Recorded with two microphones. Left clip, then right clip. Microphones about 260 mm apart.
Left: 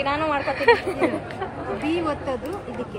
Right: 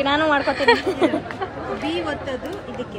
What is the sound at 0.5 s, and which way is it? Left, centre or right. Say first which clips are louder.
Speech: left 3 dB; centre.